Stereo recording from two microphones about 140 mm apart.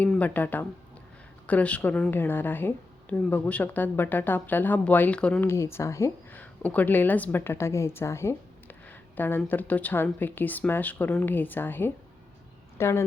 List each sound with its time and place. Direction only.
0.0 s speech: 10° left (ahead or behind)